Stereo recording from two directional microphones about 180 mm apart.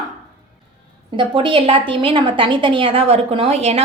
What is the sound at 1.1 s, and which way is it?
A woman's voice, 25° right (ahead or behind).